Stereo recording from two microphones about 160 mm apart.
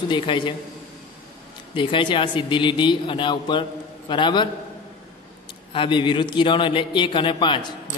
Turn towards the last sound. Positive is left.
turn(degrees=30)  # may be behind; listen again after turning